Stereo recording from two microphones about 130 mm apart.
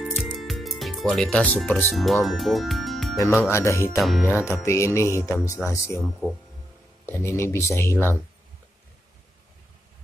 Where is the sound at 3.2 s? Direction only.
20° left (ahead or behind).